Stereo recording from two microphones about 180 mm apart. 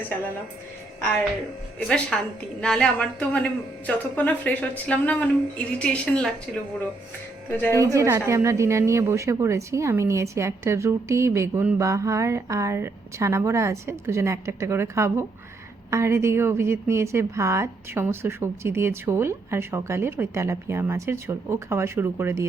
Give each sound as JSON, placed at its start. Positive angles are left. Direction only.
{"t": 2.1, "sound": "a woman's voice", "side_deg": 5}
{"t": 7.8, "sound": "a woman's voice", "side_deg": -15}